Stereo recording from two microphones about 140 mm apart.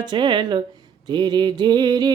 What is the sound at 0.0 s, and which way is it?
Speech, 35° right (ahead or behind).